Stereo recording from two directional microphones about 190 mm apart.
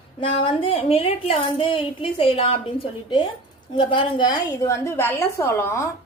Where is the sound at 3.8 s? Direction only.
25° left (ahead or behind).